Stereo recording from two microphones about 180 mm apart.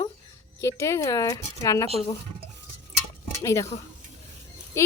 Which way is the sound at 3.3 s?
15° left (ahead or behind).